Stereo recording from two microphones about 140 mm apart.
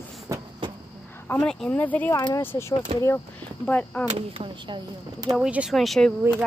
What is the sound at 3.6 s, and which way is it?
Speech, 10° left (ahead or behind).